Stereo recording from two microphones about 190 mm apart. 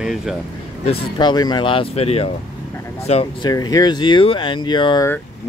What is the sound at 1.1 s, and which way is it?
Speech, 20° left (ahead or behind).